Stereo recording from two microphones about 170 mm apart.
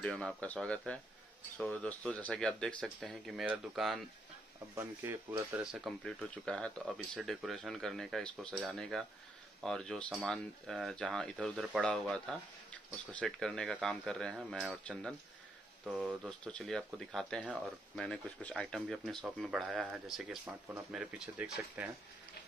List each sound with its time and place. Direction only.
0.0 s speech: 5° left (ahead or behind)
4.7 s speech: 15° right (ahead or behind)
5.6 s speech: 5° right (ahead or behind)